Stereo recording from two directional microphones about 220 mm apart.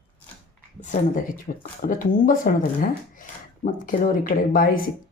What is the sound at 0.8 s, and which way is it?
Speech, 35° left (ahead or behind).